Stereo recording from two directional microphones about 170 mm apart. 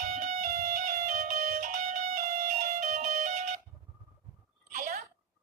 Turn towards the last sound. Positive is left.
turn(degrees=-50)  # may be behind; listen again after turning